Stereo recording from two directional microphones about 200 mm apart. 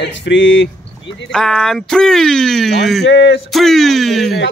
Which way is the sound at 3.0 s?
60° left (ahead or behind).